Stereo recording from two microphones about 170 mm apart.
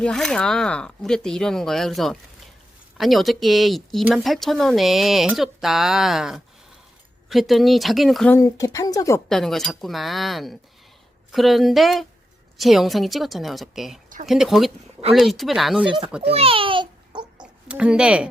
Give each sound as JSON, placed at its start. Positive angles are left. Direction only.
{"t": 0.0, "sound": "speech", "side_deg": 5}
{"t": 8.3, "sound": "speech", "side_deg": 20}
{"t": 9.3, "sound": "speech", "side_deg": 0}
{"t": 16.3, "sound": "babbling", "side_deg": -35}
{"t": 17.3, "sound": "a sound", "side_deg": -5}